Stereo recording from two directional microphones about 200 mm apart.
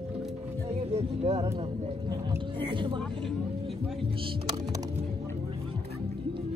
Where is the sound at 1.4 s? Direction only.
20° right (ahead or behind).